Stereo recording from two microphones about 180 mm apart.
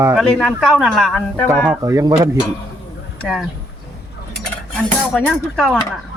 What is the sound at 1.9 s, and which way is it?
Speech, 20° right (ahead or behind).